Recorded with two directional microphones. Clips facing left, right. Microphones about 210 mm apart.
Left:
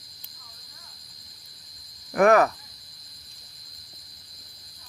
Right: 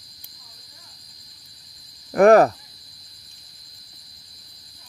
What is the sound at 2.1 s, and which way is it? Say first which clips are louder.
Speech: right 5 dB; 35° right (ahead or behind).